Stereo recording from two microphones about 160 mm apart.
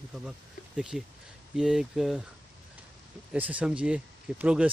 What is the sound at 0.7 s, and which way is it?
Speech, 5° right (ahead or behind).